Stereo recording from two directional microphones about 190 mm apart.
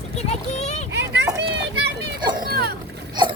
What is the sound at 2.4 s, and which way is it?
Boat, 55° right (ahead or behind).